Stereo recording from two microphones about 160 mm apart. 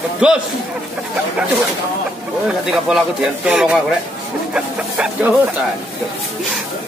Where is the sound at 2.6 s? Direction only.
5° right (ahead or behind).